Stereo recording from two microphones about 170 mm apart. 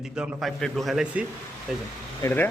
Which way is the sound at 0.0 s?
5° right (ahead or behind).